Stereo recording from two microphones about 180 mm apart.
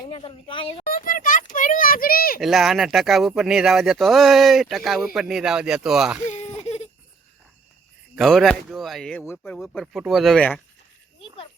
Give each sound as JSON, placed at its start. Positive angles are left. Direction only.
{"t": 0.0, "sound": "speech", "side_deg": 25}
{"t": 0.9, "sound": "a sound", "side_deg": 50}
{"t": 2.4, "sound": "speech", "side_deg": 0}
{"t": 6.2, "sound": "whimper", "side_deg": 40}
{"t": 8.1, "sound": "speech", "side_deg": 0}